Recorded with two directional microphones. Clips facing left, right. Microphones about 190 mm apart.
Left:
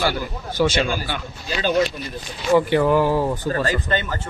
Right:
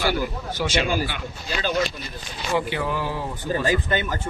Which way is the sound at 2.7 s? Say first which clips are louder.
Left 10 dB; 50° left (ahead or behind).